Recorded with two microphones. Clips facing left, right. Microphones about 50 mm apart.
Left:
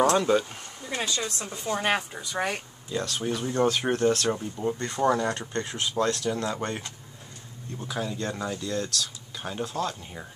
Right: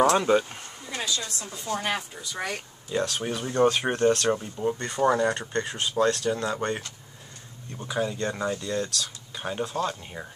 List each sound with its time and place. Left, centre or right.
0.2 s speech: centre
1.0 s a woman's voice: left
3.0 s speech: centre
7.8 s speech: centre